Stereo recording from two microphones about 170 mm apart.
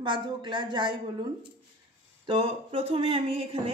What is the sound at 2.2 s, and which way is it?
Speech, 35° right (ahead or behind).